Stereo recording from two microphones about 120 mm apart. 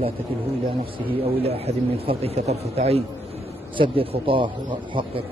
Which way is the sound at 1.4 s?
55° right (ahead or behind).